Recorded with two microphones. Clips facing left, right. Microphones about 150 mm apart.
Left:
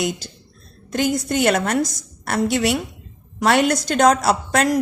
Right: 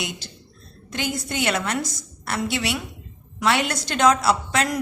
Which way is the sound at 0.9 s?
45° left (ahead or behind).